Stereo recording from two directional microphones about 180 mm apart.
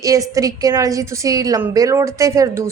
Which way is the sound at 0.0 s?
20° right (ahead or behind).